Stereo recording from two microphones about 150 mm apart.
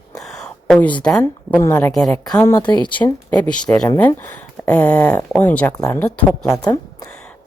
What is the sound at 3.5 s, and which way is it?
Speech, 5° left (ahead or behind).